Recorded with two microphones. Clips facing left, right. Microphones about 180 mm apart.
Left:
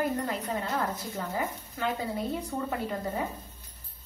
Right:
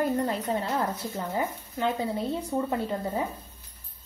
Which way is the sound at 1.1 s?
25° right (ahead or behind).